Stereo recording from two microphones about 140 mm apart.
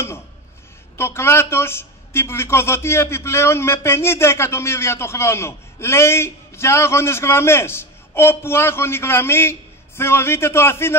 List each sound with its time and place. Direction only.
0.9 s a man's voice: 20° left (ahead or behind)